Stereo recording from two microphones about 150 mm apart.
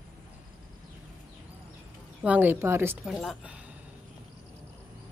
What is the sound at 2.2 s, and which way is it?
Speech, 10° right (ahead or behind).